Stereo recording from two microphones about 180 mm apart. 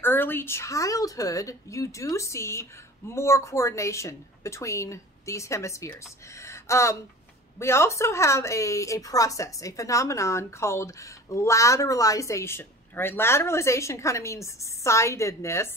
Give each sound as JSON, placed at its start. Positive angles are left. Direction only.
{"t": 0.0, "sound": "a woman's voice", "side_deg": 10}